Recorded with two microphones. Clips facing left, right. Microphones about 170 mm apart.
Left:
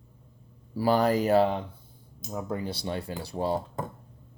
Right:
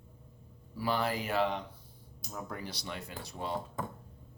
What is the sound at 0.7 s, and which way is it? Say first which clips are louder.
Speech: left 9 dB; 40° left (ahead or behind).